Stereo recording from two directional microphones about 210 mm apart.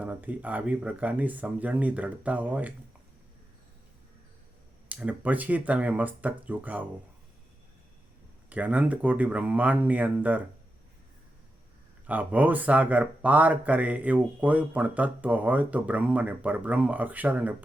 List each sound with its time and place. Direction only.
0.0 s speech: 5° right (ahead or behind)
4.9 s speech: 5° right (ahead or behind)
8.4 s speech: 5° right (ahead or behind)
12.0 s speech: 5° right (ahead or behind)